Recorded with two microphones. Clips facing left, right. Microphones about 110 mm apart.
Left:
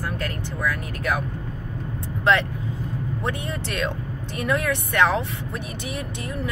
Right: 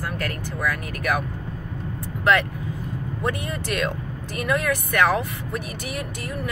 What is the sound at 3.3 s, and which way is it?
Speech, 30° left (ahead or behind).